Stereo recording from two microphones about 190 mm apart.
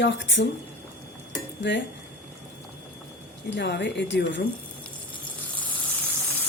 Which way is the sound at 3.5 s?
65° left (ahead or behind).